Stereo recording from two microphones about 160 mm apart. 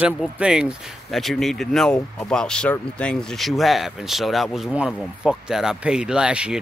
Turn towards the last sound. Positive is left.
turn(degrees=-5)  # may be behind; listen again after turning